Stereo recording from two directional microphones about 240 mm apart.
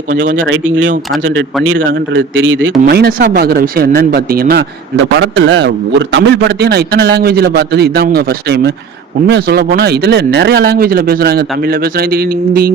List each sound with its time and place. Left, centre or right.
0.1 s speech: right
0.3 s a man's voice: right
2.8 s a man's voice: right